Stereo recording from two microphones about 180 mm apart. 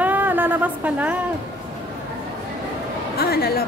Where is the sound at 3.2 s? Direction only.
60° left (ahead or behind).